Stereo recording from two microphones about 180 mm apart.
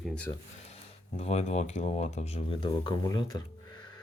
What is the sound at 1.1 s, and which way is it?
Speech, 35° left (ahead or behind).